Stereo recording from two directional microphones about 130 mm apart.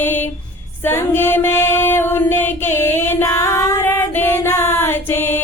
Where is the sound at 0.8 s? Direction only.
15° left (ahead or behind).